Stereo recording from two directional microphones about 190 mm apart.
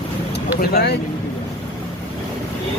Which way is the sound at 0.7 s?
55° left (ahead or behind).